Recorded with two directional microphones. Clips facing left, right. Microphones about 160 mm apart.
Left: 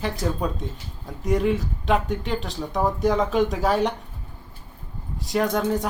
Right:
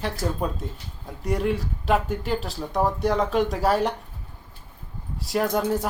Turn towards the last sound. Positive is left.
turn(degrees=-5)  # may be behind; listen again after turning